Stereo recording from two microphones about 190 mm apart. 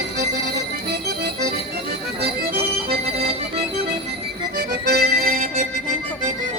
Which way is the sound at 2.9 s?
30° right (ahead or behind).